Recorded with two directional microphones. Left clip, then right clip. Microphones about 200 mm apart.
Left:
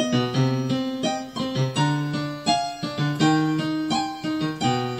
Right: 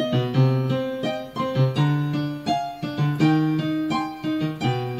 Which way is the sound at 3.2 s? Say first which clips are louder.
Even; 25° right (ahead or behind).